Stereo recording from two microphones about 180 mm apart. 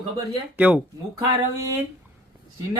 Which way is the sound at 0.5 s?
10° right (ahead or behind).